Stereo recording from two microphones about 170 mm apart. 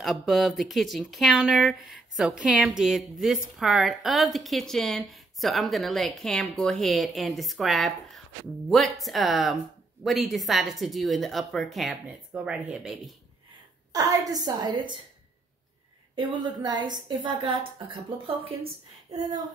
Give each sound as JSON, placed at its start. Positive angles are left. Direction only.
{"t": 0.0, "sound": "speech", "side_deg": 0}
{"t": 13.9, "sound": "a woman's voice", "side_deg": -20}
{"t": 16.2, "sound": "a woman's voice", "side_deg": -25}